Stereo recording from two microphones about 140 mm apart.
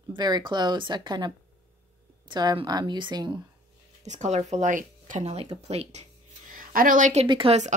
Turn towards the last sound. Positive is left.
turn(degrees=-35)  # may be behind; listen again after turning